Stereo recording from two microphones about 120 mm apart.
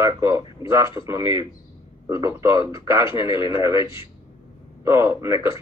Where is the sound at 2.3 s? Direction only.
25° right (ahead or behind).